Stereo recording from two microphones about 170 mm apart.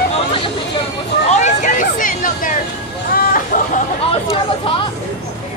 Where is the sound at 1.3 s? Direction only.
45° left (ahead or behind).